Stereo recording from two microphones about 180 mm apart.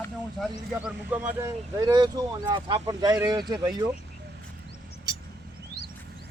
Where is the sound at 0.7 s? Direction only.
5° right (ahead or behind); by 3.4 s 20° right (ahead or behind).